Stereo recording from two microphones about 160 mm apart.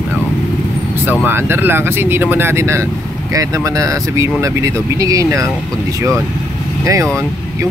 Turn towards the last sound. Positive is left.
turn(degrees=-20)  # may be behind; listen again after turning